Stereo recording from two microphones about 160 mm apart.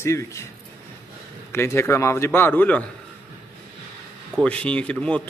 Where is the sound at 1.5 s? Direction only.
15° left (ahead or behind).